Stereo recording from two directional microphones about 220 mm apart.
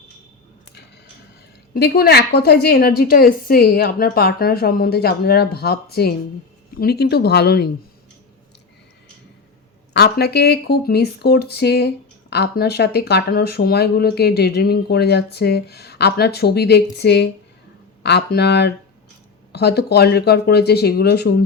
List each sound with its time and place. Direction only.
1.7 s speech: 45° left (ahead or behind)
9.9 s speech: 45° left (ahead or behind)